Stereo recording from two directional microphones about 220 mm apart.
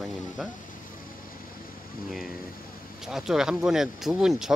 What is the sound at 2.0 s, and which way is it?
Speech, centre (ahead or behind).